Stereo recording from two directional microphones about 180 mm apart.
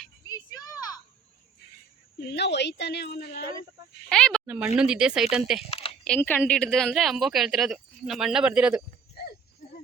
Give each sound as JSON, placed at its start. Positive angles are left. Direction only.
{"t": 0.3, "sound": "a sound", "side_deg": 20}
{"t": 2.1, "sound": "a woman's voice", "side_deg": 65}
{"t": 4.1, "sound": "speech", "side_deg": 5}
{"t": 4.4, "sound": "speech", "side_deg": -10}
{"t": 6.1, "sound": "speech", "side_deg": 10}